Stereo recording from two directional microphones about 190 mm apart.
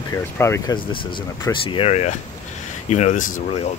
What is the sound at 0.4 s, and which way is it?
Speech, 15° left (ahead or behind).